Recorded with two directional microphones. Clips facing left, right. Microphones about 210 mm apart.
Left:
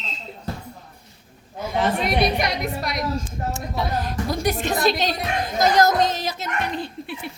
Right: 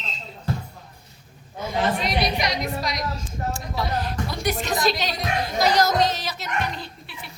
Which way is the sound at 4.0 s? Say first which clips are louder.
Left 3 dB; 45° left (ahead or behind).